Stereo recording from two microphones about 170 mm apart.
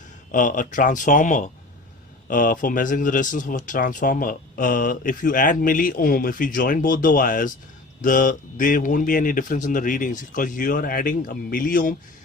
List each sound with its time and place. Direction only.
0.3 s speech: 50° left (ahead or behind)